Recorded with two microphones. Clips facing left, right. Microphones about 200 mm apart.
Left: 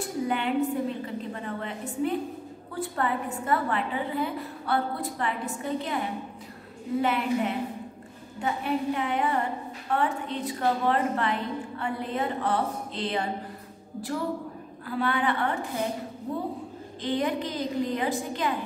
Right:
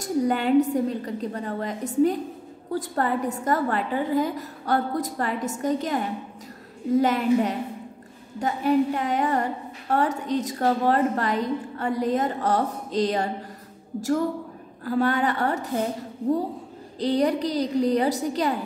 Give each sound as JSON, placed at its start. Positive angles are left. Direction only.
{"t": 0.0, "sound": "a woman's voice", "side_deg": -40}
{"t": 7.0, "sound": "a woman's voice", "side_deg": -40}
{"t": 14.9, "sound": "a woman's voice", "side_deg": -45}
{"t": 17.0, "sound": "a woman's voice", "side_deg": -40}